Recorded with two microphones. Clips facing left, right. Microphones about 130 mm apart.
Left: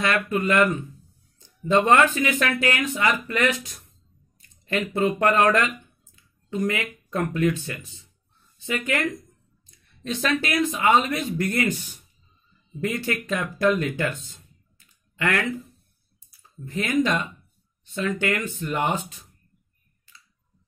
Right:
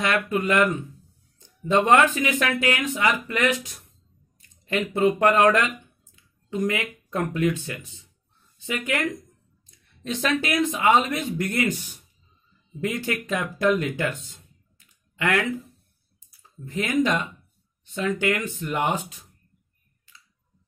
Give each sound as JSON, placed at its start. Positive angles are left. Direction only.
{"t": 0.0, "sound": "speech", "side_deg": -15}
{"t": 10.0, "sound": "speech", "side_deg": -20}
{"t": 12.8, "sound": "speech", "side_deg": -15}
{"t": 16.6, "sound": "speech", "side_deg": -15}